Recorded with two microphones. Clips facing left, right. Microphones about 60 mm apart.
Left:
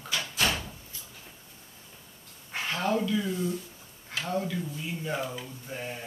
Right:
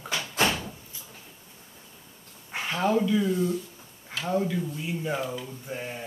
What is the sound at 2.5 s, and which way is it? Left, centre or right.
Speech, centre.